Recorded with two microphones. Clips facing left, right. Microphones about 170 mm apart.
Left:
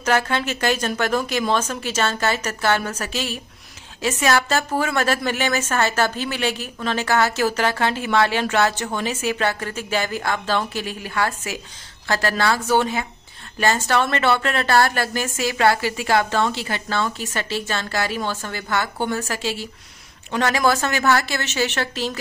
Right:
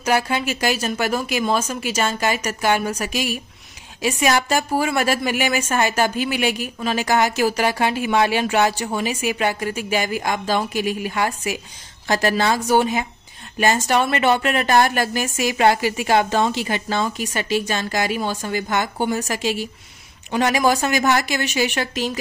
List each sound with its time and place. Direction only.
0.0 s speech: 10° right (ahead or behind)